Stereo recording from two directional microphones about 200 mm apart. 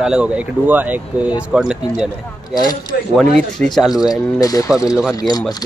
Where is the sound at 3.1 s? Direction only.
5° left (ahead or behind).